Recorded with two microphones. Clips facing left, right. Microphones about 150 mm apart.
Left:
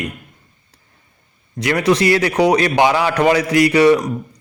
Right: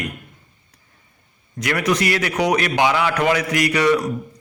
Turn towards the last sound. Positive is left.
turn(degrees=30)  # may be behind; listen again after turning